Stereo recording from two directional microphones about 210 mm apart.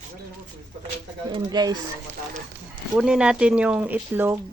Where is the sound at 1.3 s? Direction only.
20° right (ahead or behind).